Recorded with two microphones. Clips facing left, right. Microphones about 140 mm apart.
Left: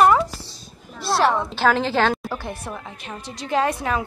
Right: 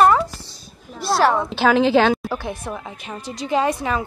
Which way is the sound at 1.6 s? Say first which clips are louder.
Right 5 dB; 10° right (ahead or behind).